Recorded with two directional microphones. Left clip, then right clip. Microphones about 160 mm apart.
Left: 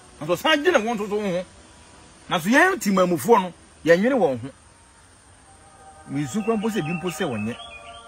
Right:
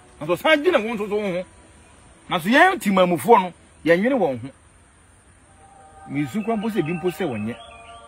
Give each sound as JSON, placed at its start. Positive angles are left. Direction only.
{"t": 0.2, "sound": "a man's voice", "side_deg": 0}
{"t": 2.5, "sound": "a man's voice", "side_deg": -5}
{"t": 6.1, "sound": "a man's voice", "side_deg": -5}